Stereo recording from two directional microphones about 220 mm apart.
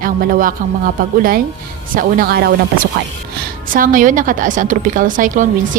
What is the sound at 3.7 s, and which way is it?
Speech, 40° right (ahead or behind).